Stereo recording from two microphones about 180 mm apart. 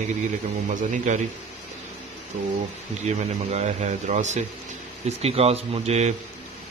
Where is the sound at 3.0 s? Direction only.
40° right (ahead or behind).